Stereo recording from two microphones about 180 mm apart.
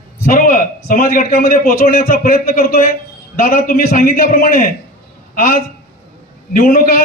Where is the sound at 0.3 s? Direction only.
50° left (ahead or behind).